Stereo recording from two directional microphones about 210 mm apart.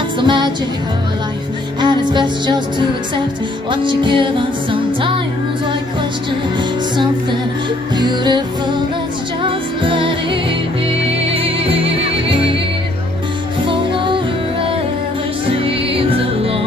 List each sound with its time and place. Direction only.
0.2 s music: 20° right (ahead or behind)
1.8 s music: 20° right (ahead or behind)
3.7 s music: 25° right (ahead or behind)
8.0 s music: 20° right (ahead or behind)
13.7 s music: 25° right (ahead or behind)
15.4 s music: 25° right (ahead or behind)